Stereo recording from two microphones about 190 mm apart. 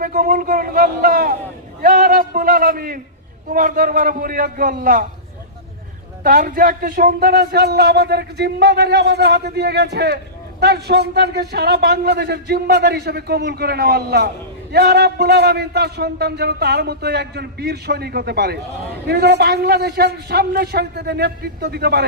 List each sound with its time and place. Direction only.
0.0 s a man's voice: 45° right (ahead or behind)
6.2 s a man's voice: 50° right (ahead or behind)